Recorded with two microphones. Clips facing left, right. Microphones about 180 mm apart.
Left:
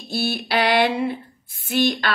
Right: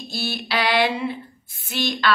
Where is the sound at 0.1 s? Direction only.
55° left (ahead or behind).